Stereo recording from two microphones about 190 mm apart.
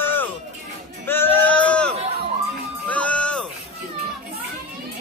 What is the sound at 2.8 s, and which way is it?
Music, 5° left (ahead or behind).